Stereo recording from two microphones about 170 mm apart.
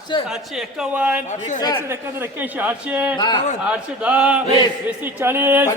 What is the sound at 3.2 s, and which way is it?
Speech, 25° left (ahead or behind).